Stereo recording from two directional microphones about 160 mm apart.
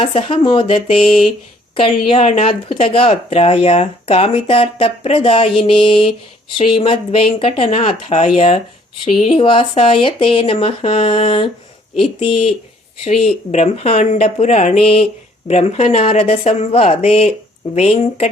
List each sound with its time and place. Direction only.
0.0 s speech: 35° left (ahead or behind)
1.0 s a sound: centre (ahead or behind)
1.7 s speech: 35° left (ahead or behind)